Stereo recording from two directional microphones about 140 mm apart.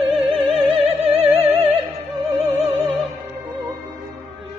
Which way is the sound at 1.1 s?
45° right (ahead or behind).